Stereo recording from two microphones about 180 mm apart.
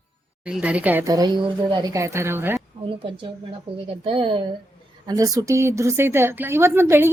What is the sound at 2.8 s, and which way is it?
A woman's voice, 30° right (ahead or behind).